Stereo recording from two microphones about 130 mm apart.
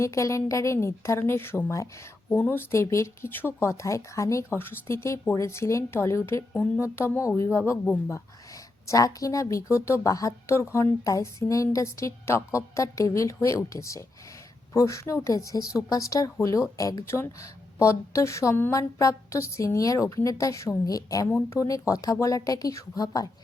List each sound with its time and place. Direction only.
0.0 s speech: 25° left (ahead or behind)